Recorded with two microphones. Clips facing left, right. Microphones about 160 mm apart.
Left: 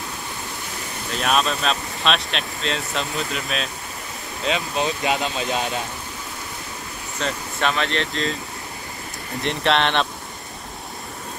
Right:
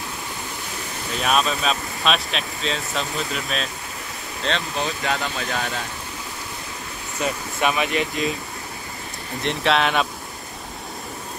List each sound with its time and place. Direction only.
1.1 s speech: centre (ahead or behind)
4.7 s speech: 20° left (ahead or behind)
7.6 s speech: 15° right (ahead or behind)
9.4 s speech: centre (ahead or behind)